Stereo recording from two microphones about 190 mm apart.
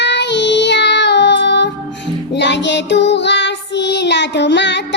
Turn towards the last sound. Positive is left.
turn(degrees=70)  # may be behind; listen again after turning